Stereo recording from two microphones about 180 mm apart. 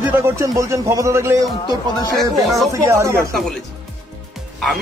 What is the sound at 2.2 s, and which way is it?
Speech, centre (ahead or behind).